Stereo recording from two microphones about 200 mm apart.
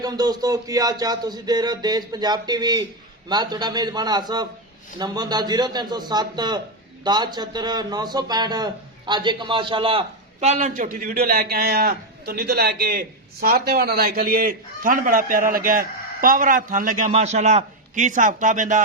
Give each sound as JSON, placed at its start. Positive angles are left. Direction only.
{"t": 0.0, "sound": "a man's voice", "side_deg": -20}